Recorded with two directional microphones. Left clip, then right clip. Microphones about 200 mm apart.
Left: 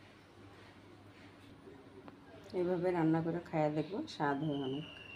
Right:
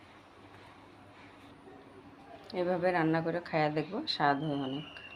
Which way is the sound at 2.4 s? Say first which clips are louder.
Right 4 dB; 5° right (ahead or behind).